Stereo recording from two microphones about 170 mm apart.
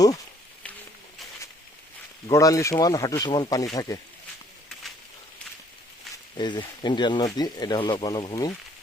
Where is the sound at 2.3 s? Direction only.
20° left (ahead or behind).